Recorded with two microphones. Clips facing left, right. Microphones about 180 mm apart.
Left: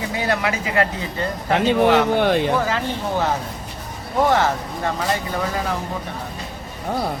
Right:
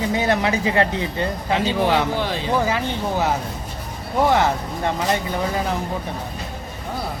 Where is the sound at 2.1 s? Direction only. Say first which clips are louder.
Left 7 dB; 60° left (ahead or behind).